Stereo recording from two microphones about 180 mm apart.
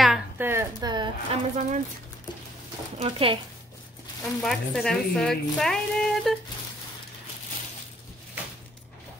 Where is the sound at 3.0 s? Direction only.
30° right (ahead or behind).